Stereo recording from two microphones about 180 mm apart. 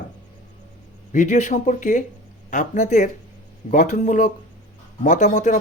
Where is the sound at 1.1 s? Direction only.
45° left (ahead or behind).